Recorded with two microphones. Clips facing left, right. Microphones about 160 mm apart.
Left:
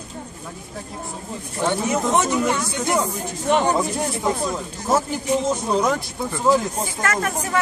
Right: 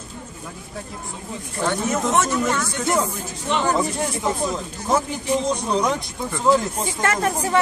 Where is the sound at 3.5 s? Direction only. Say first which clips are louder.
Left 5 dB; 50° left (ahead or behind).